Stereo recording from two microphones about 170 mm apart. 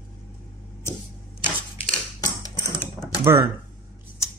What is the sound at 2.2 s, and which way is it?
Mechanisms, 20° left (ahead or behind).